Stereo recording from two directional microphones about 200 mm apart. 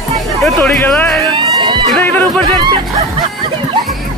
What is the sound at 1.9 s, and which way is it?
Speech, 10° left (ahead or behind).